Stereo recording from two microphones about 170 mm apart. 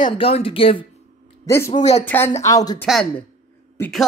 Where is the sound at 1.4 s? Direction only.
15° left (ahead or behind).